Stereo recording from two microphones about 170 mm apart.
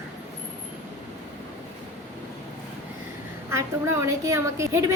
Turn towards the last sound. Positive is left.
turn(degrees=-15)  # may be behind; listen again after turning